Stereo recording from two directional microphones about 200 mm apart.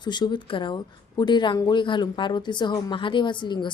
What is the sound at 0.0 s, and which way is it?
Speech, 20° left (ahead or behind).